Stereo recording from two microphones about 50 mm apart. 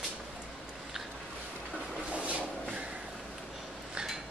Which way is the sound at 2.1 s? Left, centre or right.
Right.